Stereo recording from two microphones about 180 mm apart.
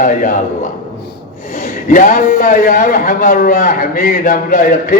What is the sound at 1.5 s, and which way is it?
A man's voice, 50° left (ahead or behind).